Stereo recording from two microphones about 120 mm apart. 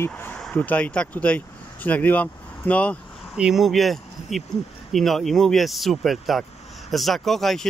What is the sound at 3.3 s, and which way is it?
Speech, 5° right (ahead or behind).